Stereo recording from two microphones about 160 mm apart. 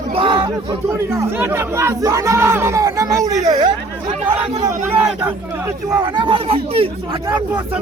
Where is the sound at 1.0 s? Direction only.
15° right (ahead or behind).